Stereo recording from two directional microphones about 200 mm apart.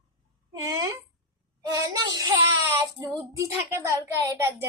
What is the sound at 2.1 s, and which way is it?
Child singing, 20° right (ahead or behind).